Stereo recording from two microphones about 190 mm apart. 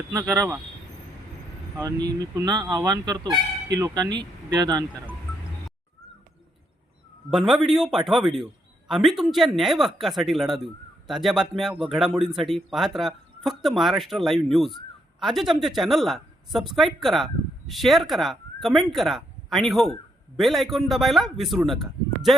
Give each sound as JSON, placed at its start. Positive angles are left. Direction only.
{"t": 0.1, "sound": "speech", "side_deg": -15}
{"t": 2.3, "sound": "speech", "side_deg": -20}
{"t": 7.3, "sound": "speech", "side_deg": 0}